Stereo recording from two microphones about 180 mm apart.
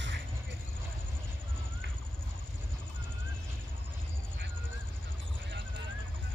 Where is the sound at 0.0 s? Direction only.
75° right (ahead or behind).